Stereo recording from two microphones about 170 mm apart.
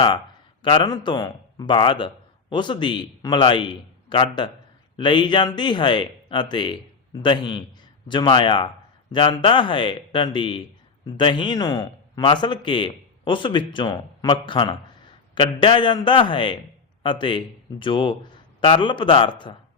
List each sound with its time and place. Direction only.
0.6 s a man's voice: 30° left (ahead or behind)